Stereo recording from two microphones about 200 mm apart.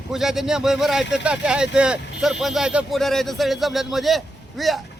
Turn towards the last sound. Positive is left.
turn(degrees=0)  # may be behind; listen again after turning